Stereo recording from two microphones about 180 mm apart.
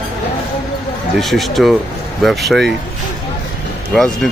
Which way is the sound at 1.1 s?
Centre (ahead or behind).